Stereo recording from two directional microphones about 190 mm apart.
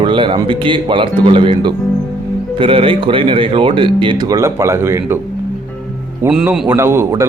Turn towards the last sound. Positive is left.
turn(degrees=-15)  # may be behind; listen again after turning